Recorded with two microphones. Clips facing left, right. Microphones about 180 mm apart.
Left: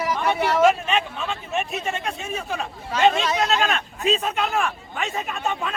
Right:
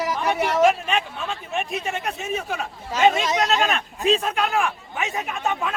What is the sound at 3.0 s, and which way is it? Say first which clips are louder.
Speech: even; 5° right (ahead or behind).